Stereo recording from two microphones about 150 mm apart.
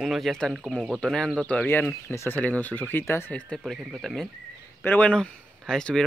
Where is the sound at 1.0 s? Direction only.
5° left (ahead or behind).